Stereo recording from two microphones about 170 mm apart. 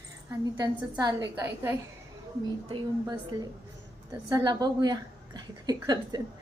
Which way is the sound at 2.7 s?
25° right (ahead or behind).